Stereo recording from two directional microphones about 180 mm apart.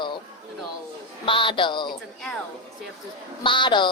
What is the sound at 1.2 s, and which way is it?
Speech, 30° left (ahead or behind).